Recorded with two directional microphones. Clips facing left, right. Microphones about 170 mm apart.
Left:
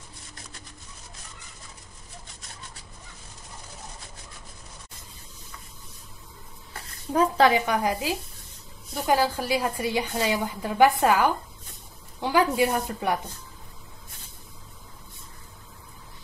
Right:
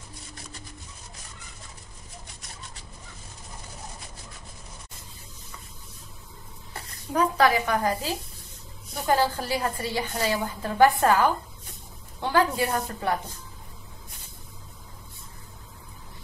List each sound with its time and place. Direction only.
7.2 s a woman's voice: 25° left (ahead or behind)